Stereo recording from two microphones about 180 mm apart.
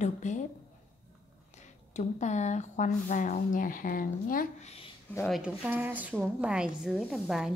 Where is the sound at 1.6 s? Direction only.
40° left (ahead or behind).